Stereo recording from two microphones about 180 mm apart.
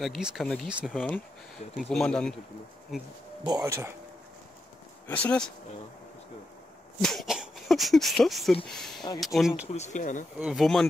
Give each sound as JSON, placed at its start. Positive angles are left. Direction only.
{"t": 0.0, "sound": "speech", "side_deg": -5}
{"t": 3.6, "sound": "speech", "side_deg": -15}
{"t": 5.0, "sound": "speech", "side_deg": 10}
{"t": 7.0, "sound": "speech", "side_deg": 0}
{"t": 9.7, "sound": "speech", "side_deg": 40}
{"t": 10.4, "sound": "speech", "side_deg": 0}